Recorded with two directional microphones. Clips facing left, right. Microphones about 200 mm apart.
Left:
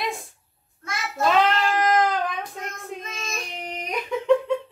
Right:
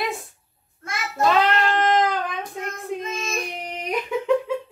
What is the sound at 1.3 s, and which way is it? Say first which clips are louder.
Cat: left 1 dB; centre (ahead or behind).